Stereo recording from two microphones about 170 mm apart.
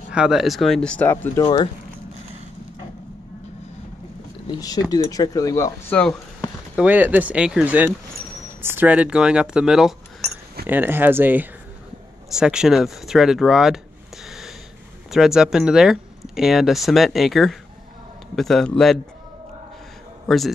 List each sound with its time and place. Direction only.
0.1 s speech: 5° right (ahead or behind); by 1.7 s 20° left (ahead or behind)
4.5 s speech: 20° left (ahead or behind)
6.8 s speech: 10° right (ahead or behind)
20.2 s a man's voice: centre (ahead or behind)